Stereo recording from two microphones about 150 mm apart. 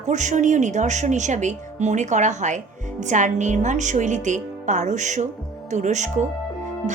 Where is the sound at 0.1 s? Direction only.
55° right (ahead or behind).